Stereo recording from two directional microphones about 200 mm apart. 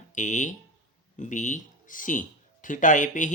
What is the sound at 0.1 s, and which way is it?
Speech, 35° left (ahead or behind).